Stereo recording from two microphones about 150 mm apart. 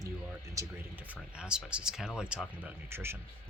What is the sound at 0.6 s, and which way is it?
Speech, 20° right (ahead or behind).